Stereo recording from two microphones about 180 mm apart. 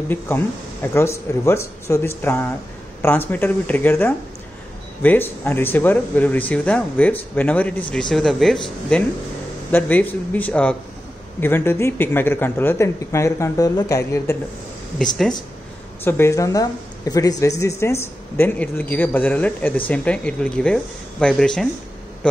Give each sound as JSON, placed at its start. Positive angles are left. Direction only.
{"t": 0.1, "sound": "speech", "side_deg": 10}
{"t": 15.0, "sound": "speech", "side_deg": 5}
{"t": 22.2, "sound": "bee", "side_deg": 5}